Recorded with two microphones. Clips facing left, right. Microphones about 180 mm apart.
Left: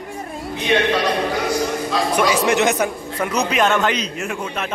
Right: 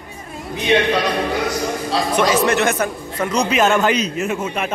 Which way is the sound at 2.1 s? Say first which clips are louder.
Right 1 dB; 10° left (ahead or behind).